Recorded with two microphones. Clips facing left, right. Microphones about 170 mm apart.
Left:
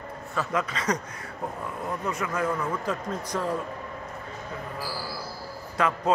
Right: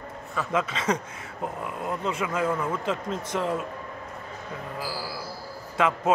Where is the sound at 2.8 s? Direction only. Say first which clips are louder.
Right 1 dB; 25° right (ahead or behind).